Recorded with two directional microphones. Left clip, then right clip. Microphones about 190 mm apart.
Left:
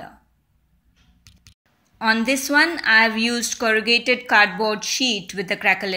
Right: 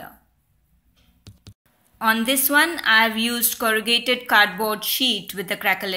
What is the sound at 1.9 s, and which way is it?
A woman's voice, 15° left (ahead or behind).